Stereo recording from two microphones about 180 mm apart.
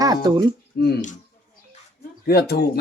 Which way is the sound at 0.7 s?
60° left (ahead or behind).